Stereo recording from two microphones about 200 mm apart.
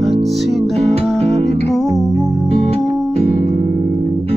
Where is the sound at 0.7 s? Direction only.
30° right (ahead or behind).